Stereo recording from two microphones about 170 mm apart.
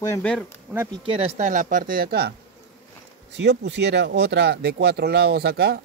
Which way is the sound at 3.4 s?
90° right.